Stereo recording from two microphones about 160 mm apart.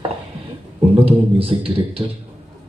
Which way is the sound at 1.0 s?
35° right (ahead or behind).